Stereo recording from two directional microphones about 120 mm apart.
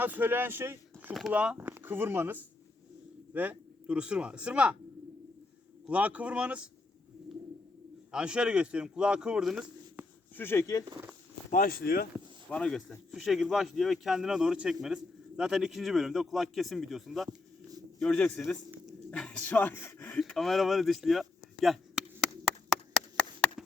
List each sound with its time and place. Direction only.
0.0 s a man's voice: 15° right (ahead or behind)
5.9 s a man's voice: 10° right (ahead or behind)
8.1 s a man's voice: 10° right (ahead or behind)
10.3 s speech: 20° left (ahead or behind)
12.5 s speech: 10° left (ahead or behind)
17.2 s a sound: 30° right (ahead or behind)
18.0 s a man's voice: 10° left (ahead or behind)
22.4 s a sound: centre (ahead or behind)